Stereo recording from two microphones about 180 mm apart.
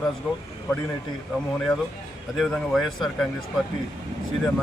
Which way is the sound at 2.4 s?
Centre (ahead or behind).